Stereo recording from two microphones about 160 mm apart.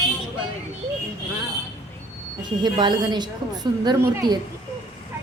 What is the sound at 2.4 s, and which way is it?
A woman's voice, 30° right (ahead or behind).